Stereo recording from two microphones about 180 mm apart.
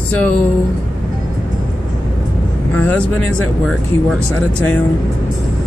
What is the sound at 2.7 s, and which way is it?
Speech, 10° left (ahead or behind).